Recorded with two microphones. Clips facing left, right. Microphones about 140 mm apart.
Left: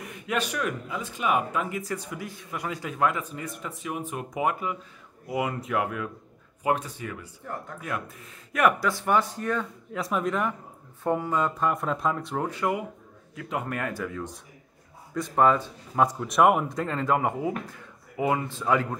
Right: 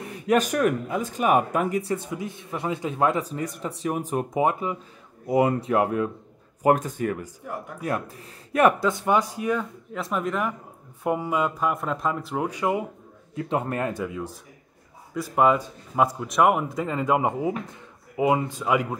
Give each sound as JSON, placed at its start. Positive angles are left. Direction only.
{"t": 0.0, "sound": "speech", "side_deg": -35}
{"t": 1.8, "sound": "speech", "side_deg": -25}
{"t": 6.6, "sound": "speech", "side_deg": -45}
{"t": 7.5, "sound": "speech", "side_deg": -10}
{"t": 7.8, "sound": "speech", "side_deg": -35}
{"t": 11.1, "sound": "speech", "side_deg": -10}
{"t": 13.3, "sound": "speech", "side_deg": -30}
{"t": 15.1, "sound": "speech", "side_deg": -5}